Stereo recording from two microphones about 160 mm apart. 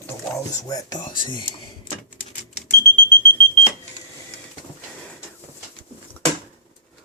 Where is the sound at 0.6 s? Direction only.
25° left (ahead or behind).